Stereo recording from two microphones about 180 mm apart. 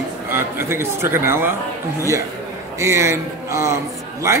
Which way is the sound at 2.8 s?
15° right (ahead or behind).